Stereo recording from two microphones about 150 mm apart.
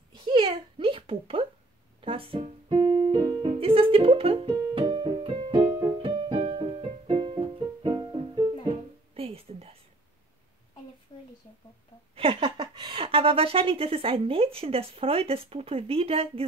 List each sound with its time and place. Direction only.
0.1 s a sound: 35° right (ahead or behind)
2.0 s music: 35° right (ahead or behind)
2.8 s keyboard: 25° right (ahead or behind)
3.4 s music: 40° right (ahead or behind)
9.1 s a sound: 40° right (ahead or behind)
12.2 s a woman's voice: 35° right (ahead or behind)